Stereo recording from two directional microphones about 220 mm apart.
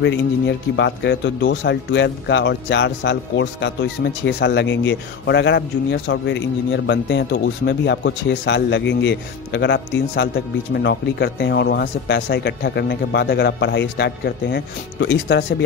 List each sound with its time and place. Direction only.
0.0 s speech: 55° left (ahead or behind)